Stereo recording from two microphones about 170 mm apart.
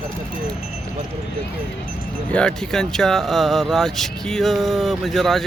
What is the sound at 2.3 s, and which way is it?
Speech, 5° left (ahead or behind).